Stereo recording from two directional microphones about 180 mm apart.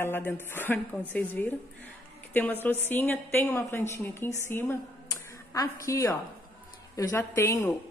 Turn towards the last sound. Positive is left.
turn(degrees=15)  # may be behind; listen again after turning